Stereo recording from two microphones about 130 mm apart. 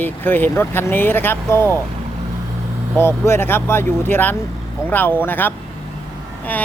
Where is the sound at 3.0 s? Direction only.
20° left (ahead or behind).